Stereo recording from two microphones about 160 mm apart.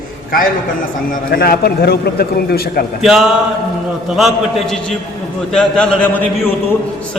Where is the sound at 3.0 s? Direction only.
5° right (ahead or behind).